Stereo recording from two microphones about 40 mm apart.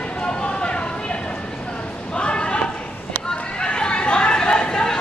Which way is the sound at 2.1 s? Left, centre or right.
Left.